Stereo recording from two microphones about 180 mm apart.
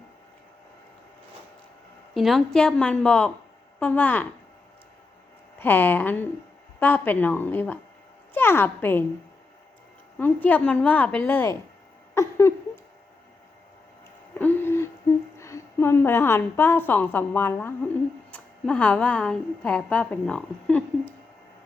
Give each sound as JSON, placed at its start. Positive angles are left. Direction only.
{"t": 2.1, "sound": "a woman's voice", "side_deg": 0}
{"t": 5.5, "sound": "a woman's voice", "side_deg": 10}
{"t": 10.2, "sound": "a woman's voice", "side_deg": 10}
{"t": 12.1, "sound": "a sound", "side_deg": 15}
{"t": 14.3, "sound": "owl", "side_deg": 10}
{"t": 15.1, "sound": "a sound", "side_deg": 15}
{"t": 15.4, "sound": "a woman's voice", "side_deg": 15}